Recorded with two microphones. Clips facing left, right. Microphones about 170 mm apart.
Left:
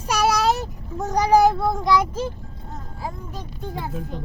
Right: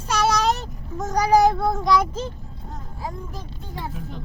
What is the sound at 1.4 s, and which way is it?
Child singing, 5° left (ahead or behind).